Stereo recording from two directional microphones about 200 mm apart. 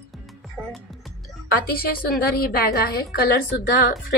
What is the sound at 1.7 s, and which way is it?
A woman's voice, 50° left (ahead or behind).